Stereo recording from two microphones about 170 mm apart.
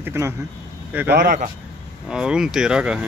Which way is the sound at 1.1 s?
50° right (ahead or behind).